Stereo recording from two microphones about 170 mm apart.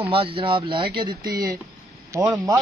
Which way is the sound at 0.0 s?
30° right (ahead or behind).